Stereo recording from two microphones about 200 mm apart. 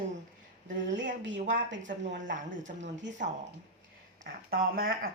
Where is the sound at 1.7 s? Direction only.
65° right (ahead or behind).